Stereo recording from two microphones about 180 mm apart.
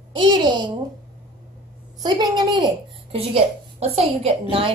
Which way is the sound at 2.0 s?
25° right (ahead or behind).